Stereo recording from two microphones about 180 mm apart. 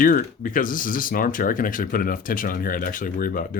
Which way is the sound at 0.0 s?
50° left (ahead or behind).